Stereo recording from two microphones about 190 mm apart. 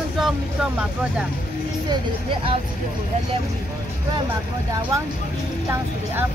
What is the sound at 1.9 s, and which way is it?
Speech, 25° right (ahead or behind).